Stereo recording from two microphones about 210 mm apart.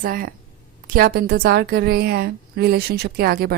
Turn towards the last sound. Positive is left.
turn(degrees=-45)  # may be behind; listen again after turning